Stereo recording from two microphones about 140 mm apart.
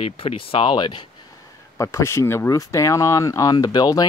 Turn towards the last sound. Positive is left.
turn(degrees=25)  # may be behind; listen again after turning